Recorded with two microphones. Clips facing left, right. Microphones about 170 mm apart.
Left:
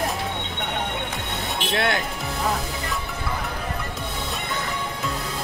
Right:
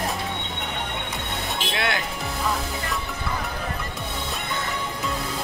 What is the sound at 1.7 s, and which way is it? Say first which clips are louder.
Speech: left 4 dB; 45° left (ahead or behind).